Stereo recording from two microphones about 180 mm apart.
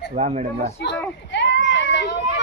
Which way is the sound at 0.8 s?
70° left (ahead or behind).